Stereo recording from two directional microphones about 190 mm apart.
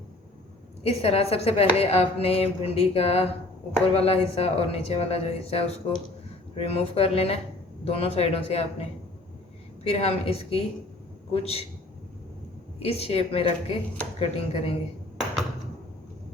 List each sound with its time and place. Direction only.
0.9 s a woman's voice: 30° left (ahead or behind)
9.8 s a woman's voice: 30° left (ahead or behind)
12.8 s a woman's voice: 30° left (ahead or behind)